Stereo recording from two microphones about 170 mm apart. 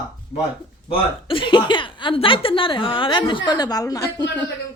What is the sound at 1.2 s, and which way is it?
A woman's voice, 30° left (ahead or behind).